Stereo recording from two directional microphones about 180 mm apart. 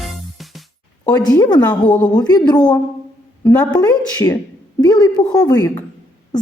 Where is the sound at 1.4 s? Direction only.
20° left (ahead or behind).